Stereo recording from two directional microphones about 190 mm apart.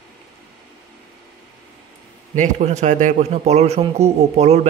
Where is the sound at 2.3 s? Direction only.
40° right (ahead or behind).